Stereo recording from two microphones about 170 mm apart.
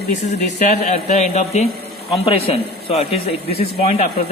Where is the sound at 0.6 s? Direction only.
50° left (ahead or behind).